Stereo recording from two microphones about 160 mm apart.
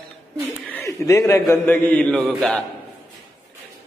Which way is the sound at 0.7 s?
15° left (ahead or behind).